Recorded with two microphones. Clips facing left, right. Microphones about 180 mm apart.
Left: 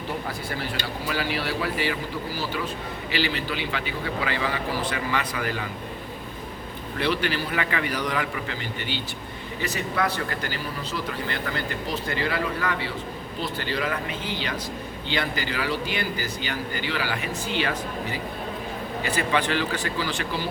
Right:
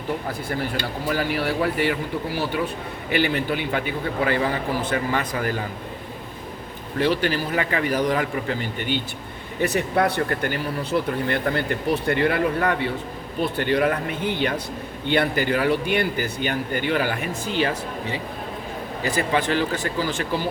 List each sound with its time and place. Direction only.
1.1 s a man's voice: 50° right (ahead or behind)
7.0 s a man's voice: 40° right (ahead or behind)
10.0 s a man's voice: 55° right (ahead or behind)
19.1 s a man's voice: 40° right (ahead or behind)